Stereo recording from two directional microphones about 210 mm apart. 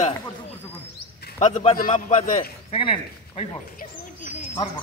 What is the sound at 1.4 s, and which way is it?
A man's voice, 30° left (ahead or behind).